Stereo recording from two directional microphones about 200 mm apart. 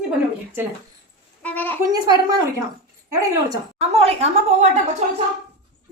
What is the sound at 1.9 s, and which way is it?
Speech, 20° right (ahead or behind).